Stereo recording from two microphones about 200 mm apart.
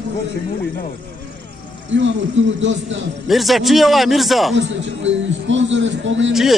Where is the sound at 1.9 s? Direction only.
65° right (ahead or behind).